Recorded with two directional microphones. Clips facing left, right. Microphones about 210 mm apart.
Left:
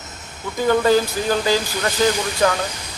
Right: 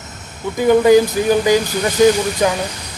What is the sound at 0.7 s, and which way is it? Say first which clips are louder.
Speech: right 6 dB; 15° right (ahead or behind).